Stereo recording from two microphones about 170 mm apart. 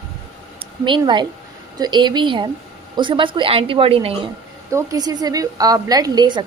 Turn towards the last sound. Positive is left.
turn(degrees=-25)  # may be behind; listen again after turning